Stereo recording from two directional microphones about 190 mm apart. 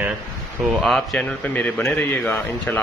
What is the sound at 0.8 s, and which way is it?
A man's voice, 5° left (ahead or behind).